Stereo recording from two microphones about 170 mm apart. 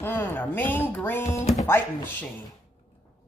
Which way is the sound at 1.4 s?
40° left (ahead or behind).